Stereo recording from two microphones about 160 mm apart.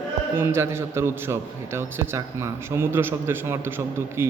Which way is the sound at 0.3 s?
15° right (ahead or behind).